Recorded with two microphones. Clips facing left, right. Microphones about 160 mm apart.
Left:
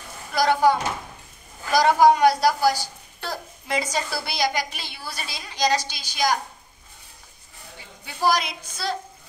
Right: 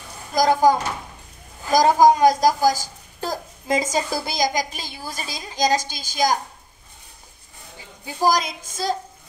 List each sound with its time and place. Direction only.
0.4 s a woman's voice: 40° right (ahead or behind)
8.0 s a woman's voice: 40° right (ahead or behind)